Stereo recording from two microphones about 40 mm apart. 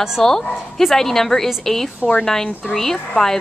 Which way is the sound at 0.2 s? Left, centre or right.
Centre.